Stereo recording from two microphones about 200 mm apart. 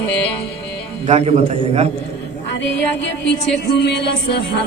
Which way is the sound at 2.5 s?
65° left (ahead or behind).